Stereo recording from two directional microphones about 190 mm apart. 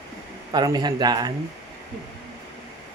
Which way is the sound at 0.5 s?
20° right (ahead or behind).